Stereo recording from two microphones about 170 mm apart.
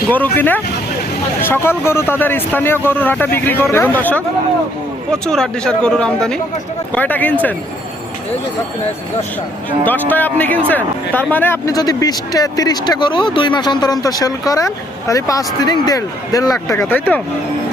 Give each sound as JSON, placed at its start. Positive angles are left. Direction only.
{"t": 0.1, "sound": "speech", "side_deg": 10}
{"t": 9.8, "sound": "speech", "side_deg": 10}